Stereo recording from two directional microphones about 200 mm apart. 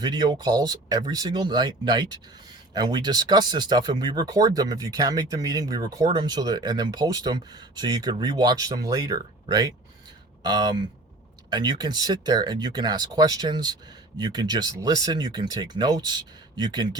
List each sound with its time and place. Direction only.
0.0 s speech: 20° right (ahead or behind)